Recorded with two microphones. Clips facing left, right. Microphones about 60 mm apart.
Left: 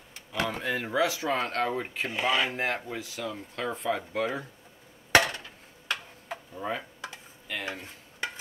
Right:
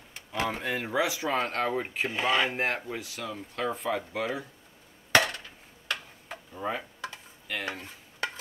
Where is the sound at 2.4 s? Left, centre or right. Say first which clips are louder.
Right 1 dB; right.